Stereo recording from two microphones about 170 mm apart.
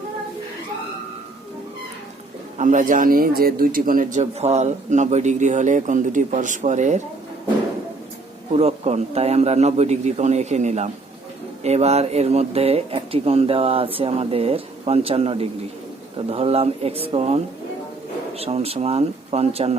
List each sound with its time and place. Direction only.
2.6 s speech: 50° right (ahead or behind)
8.5 s speech: 40° right (ahead or behind)